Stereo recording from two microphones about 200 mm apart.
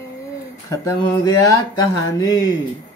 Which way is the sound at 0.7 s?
20° left (ahead or behind).